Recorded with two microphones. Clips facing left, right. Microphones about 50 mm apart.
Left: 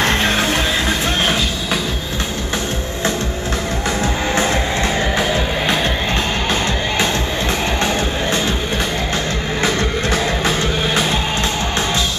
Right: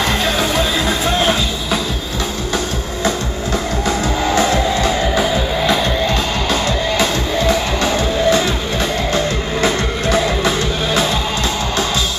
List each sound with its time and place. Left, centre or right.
0.0 s music: left
4.4 s music: left